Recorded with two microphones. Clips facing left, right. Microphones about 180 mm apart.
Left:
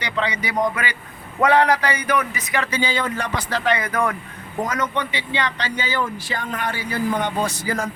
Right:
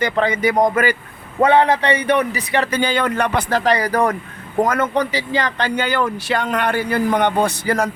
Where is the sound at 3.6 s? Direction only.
40° right (ahead or behind).